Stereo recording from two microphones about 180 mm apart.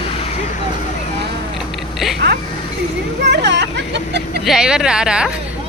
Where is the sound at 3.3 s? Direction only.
70° right (ahead or behind).